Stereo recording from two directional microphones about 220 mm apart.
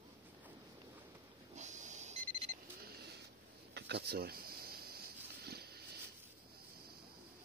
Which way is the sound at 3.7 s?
50° right (ahead or behind).